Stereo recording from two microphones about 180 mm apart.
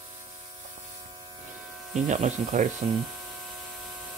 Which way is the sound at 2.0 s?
40° right (ahead or behind).